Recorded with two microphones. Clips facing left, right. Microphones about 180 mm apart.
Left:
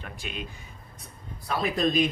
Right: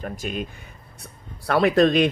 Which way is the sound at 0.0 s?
40° right (ahead or behind).